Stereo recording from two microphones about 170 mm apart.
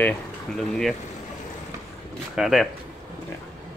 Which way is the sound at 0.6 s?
5° left (ahead or behind).